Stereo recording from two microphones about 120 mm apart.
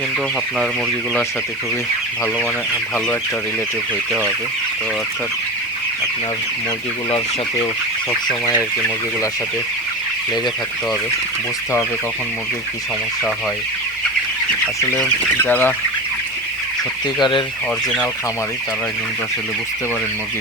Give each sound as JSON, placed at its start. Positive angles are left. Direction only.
{"t": 14.9, "sound": "speech", "side_deg": 15}
{"t": 17.2, "sound": "speech", "side_deg": 40}